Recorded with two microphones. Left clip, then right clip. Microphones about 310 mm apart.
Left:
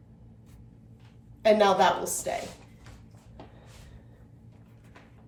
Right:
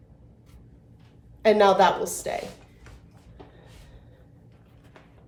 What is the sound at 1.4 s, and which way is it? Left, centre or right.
Speech, centre.